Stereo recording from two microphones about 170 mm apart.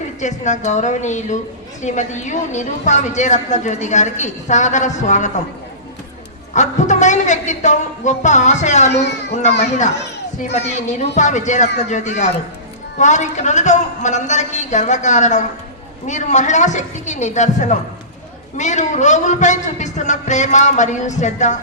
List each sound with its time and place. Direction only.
0.2 s a woman's voice: 45° left (ahead or behind)
6.5 s a woman's voice: 45° left (ahead or behind)